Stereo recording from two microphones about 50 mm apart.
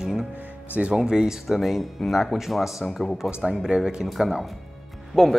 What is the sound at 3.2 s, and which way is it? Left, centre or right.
Speech, centre.